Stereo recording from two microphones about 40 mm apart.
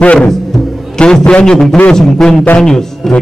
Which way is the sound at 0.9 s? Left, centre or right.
Left.